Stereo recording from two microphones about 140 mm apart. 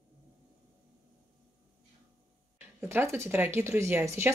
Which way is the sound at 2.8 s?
15° right (ahead or behind).